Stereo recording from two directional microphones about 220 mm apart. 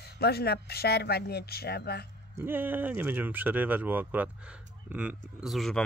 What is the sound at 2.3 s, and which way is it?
Speech, 10° right (ahead or behind).